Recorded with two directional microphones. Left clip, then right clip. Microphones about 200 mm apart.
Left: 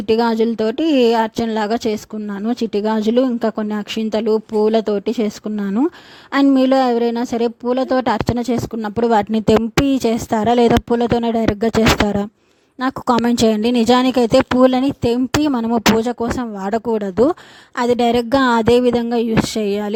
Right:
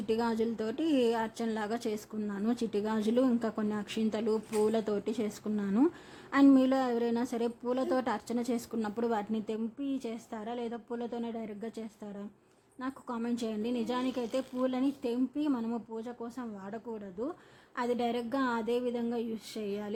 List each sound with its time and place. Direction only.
0.1 s a woman's voice: 40° left (ahead or behind)